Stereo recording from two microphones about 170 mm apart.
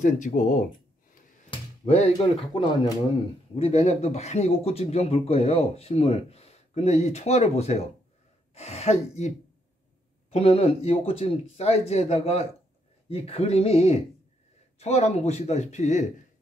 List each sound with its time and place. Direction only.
0.0 s speech: 45° left (ahead or behind)
1.5 s a sound: 40° left (ahead or behind)
2.1 s speech: 25° left (ahead or behind)
3.5 s speech: 35° left (ahead or behind)
10.3 s speech: 35° left (ahead or behind)